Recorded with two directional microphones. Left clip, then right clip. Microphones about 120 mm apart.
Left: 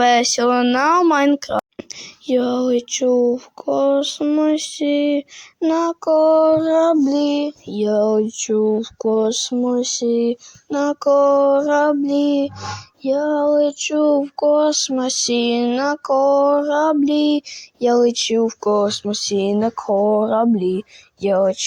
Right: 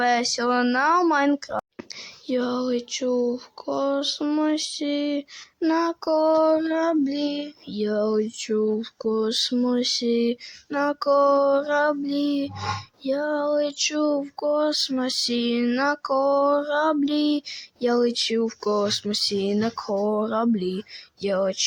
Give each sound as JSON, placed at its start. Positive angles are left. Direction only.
{"t": 0.0, "sound": "speech", "side_deg": 60}
{"t": 2.2, "sound": "speech", "side_deg": 45}
{"t": 8.4, "sound": "a sound", "side_deg": 25}